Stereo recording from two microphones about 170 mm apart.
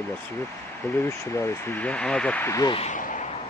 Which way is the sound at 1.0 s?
15° left (ahead or behind).